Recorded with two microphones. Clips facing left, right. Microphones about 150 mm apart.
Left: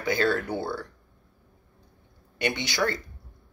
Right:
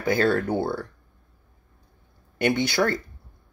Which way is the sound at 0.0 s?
50° right (ahead or behind).